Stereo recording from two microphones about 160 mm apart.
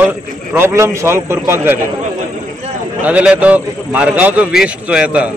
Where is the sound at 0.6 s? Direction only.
15° right (ahead or behind).